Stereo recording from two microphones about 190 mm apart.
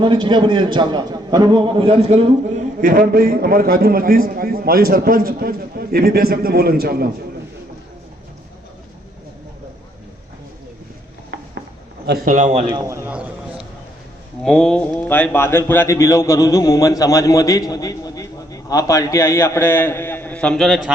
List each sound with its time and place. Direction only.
0.0 s a man's voice: 25° right (ahead or behind)
2.8 s a man's voice: 50° right (ahead or behind)
11.3 s a sound: 75° right (ahead or behind)
12.0 s a man's voice: 50° right (ahead or behind)
12.7 s a man's voice: 15° right (ahead or behind)
14.4 s a man's voice: 5° left (ahead or behind)